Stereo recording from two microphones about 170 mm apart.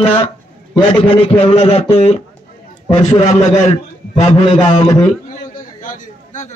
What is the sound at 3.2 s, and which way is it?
A man's voice, 45° left (ahead or behind).